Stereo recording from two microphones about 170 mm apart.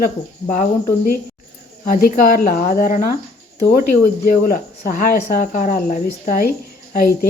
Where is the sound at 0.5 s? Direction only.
50° left (ahead or behind).